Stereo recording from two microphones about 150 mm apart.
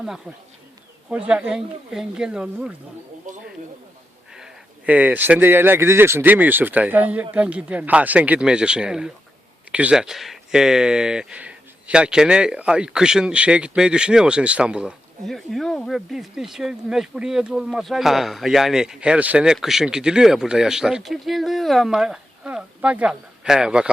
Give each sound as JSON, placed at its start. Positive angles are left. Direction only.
{"t": 1.1, "sound": "speech", "side_deg": -5}
{"t": 3.3, "sound": "a sound", "side_deg": -60}
{"t": 4.4, "sound": "speech", "side_deg": -5}